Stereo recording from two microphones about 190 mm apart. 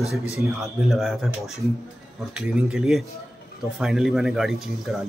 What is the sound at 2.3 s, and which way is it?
Music, 5° right (ahead or behind).